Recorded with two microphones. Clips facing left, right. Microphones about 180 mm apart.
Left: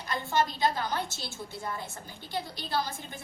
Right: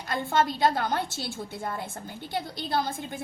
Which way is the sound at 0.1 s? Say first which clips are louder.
Right 3 dB; 55° right (ahead or behind).